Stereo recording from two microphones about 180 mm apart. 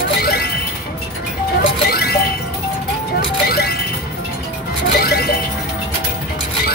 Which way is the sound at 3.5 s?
60° left (ahead or behind).